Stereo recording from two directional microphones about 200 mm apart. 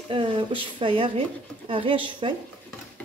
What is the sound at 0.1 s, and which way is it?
A woman's voice, 25° right (ahead or behind).